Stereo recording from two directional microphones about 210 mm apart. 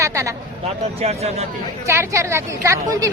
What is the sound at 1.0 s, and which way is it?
Speech, 30° right (ahead or behind).